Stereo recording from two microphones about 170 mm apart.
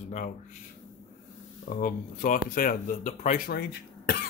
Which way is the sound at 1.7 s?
50° left (ahead or behind).